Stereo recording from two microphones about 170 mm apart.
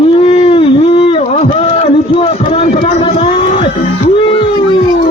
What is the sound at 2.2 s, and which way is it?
Run, 40° left (ahead or behind).